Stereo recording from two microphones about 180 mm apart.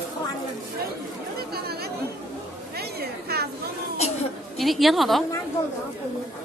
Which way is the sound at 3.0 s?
60° right (ahead or behind).